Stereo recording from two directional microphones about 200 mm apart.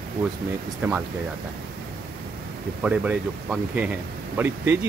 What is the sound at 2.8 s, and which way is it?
Speech, 5° right (ahead or behind).